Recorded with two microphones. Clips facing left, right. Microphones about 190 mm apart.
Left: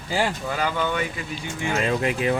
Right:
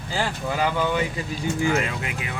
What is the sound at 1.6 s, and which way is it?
Speech, 30° left (ahead or behind).